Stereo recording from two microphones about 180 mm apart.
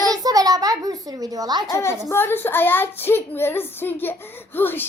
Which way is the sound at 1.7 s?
15° left (ahead or behind).